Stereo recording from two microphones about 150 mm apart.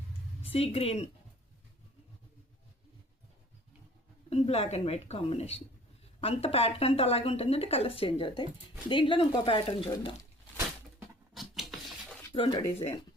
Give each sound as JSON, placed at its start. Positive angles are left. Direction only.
{"t": 0.4, "sound": "speech", "side_deg": 40}
{"t": 4.3, "sound": "speech", "side_deg": 45}
{"t": 11.3, "sound": "a sound", "side_deg": 0}
{"t": 12.3, "sound": "speech", "side_deg": 30}